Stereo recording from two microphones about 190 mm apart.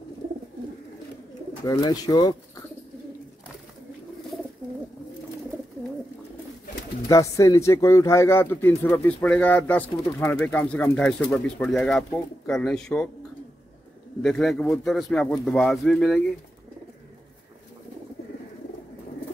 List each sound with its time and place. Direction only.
1.6 s speech: 20° left (ahead or behind)
7.1 s speech: 15° left (ahead or behind)
14.2 s a man's voice: centre (ahead or behind)